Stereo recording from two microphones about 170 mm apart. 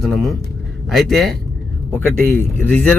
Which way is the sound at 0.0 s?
Centre (ahead or behind).